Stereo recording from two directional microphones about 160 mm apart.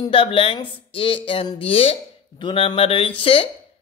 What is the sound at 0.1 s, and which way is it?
Speech, 35° left (ahead or behind).